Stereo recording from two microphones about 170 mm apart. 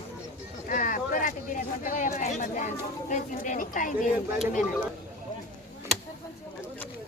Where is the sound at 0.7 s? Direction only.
50° left (ahead or behind).